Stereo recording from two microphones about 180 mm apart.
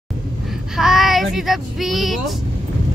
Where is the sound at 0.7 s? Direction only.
Centre (ahead or behind).